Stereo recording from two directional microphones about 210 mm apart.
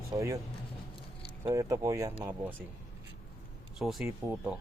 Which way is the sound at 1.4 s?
15° right (ahead or behind).